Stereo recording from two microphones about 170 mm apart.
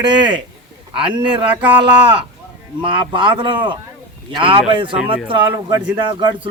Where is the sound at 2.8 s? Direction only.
30° right (ahead or behind).